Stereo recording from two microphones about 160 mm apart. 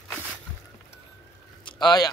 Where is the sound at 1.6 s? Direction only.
30° left (ahead or behind).